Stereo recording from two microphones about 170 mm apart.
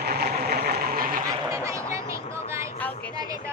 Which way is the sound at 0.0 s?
65° right (ahead or behind).